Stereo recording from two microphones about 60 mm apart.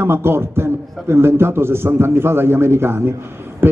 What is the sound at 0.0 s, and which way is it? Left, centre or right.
A man's voice, right.